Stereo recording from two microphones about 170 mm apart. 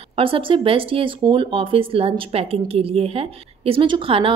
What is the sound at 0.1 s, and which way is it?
Speech, 30° right (ahead or behind).